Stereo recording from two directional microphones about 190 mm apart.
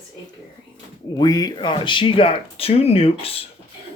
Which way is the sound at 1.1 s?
20° left (ahead or behind).